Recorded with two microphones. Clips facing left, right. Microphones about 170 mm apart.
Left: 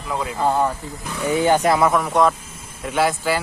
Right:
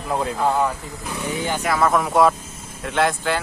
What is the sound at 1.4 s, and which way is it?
Speech, 45° left (ahead or behind).